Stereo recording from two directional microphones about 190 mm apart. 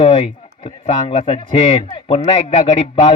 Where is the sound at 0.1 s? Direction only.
30° left (ahead or behind).